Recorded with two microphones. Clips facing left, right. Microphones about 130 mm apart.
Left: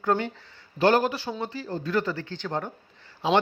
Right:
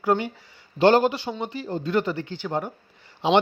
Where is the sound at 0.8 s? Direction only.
25° right (ahead or behind).